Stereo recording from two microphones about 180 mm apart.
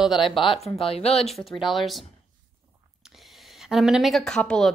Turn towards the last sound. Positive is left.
turn(degrees=0)  # may be behind; listen again after turning